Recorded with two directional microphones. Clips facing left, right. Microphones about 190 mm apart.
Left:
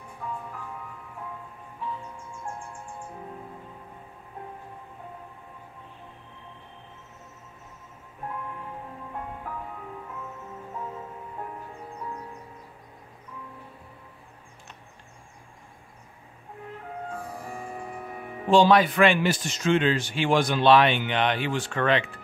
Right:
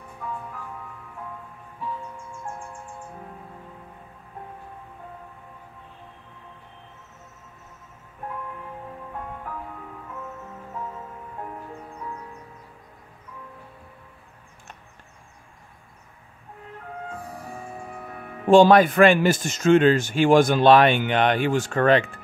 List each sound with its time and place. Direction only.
18.5 s speech: 50° right (ahead or behind)